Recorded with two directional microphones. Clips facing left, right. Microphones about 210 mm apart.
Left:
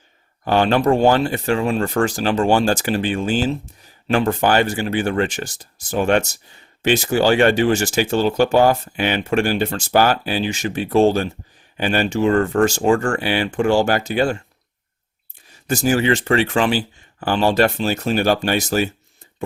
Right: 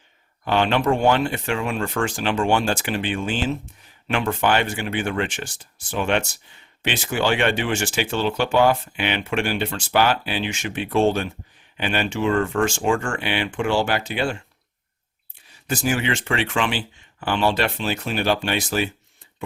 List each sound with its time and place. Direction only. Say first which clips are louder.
0.4 s speech: left 4 dB; 40° left (ahead or behind)
15.6 s speech: left 6 dB; 40° left (ahead or behind)